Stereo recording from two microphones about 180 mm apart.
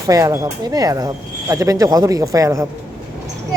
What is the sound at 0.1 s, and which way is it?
Speech, 15° right (ahead or behind).